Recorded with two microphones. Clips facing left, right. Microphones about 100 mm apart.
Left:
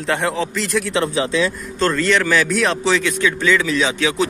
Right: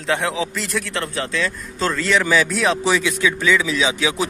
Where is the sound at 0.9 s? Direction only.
15° left (ahead or behind).